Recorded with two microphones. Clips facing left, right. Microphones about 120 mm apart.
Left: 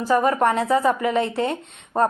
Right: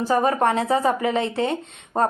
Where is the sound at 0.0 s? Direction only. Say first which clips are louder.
Left 1 dB; 30° right (ahead or behind).